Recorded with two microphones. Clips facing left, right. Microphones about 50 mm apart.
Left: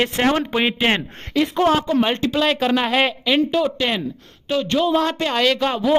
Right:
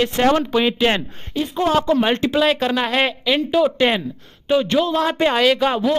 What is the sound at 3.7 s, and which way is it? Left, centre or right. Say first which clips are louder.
Speech: right 4 dB; centre.